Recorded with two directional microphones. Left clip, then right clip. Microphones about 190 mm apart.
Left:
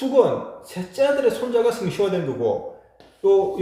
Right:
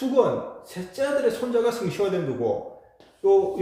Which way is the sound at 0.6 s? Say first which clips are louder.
Left 6 dB; 10° right (ahead or behind).